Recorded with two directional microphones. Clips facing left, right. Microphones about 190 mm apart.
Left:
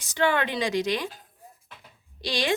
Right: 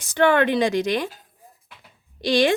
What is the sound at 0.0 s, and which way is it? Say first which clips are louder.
Speech: right 7 dB; 55° right (ahead or behind).